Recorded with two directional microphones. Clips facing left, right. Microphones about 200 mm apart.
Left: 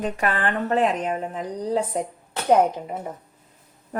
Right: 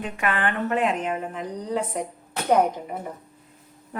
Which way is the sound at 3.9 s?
45° left (ahead or behind).